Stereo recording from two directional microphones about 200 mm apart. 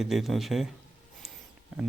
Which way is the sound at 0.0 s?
Centre (ahead or behind).